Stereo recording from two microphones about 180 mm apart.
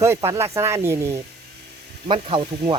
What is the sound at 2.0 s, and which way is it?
Speech, 30° right (ahead or behind).